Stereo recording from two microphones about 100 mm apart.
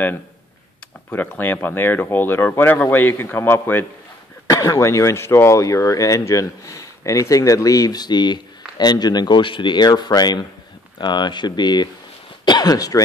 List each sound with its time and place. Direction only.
1.1 s speech: 15° left (ahead or behind)
4.5 s speech: 35° left (ahead or behind)